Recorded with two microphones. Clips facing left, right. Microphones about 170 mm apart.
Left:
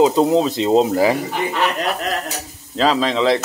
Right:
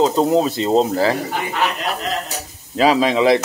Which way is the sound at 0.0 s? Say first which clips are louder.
Left 1 dB; centre (ahead or behind).